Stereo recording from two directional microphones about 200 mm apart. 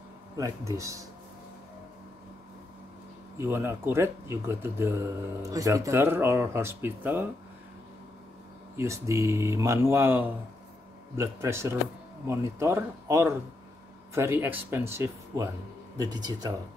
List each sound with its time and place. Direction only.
0.4 s speech: 15° right (ahead or behind)
3.3 s speech: 10° right (ahead or behind)
8.7 s speech: 15° right (ahead or behind)